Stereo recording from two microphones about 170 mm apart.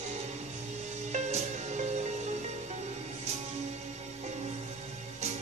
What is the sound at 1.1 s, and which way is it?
Music, 45° right (ahead or behind).